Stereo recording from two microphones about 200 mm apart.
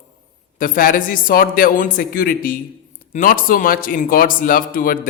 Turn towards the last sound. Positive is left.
turn(degrees=45)  # may be behind; listen again after turning